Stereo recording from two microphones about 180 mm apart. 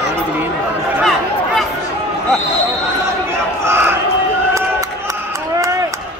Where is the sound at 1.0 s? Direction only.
Centre (ahead or behind).